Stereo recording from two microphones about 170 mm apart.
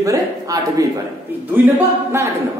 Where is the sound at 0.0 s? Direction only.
20° right (ahead or behind).